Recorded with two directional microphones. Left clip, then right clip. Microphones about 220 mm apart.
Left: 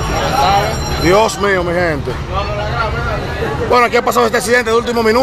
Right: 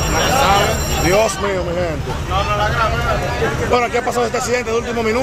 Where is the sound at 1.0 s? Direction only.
15° left (ahead or behind).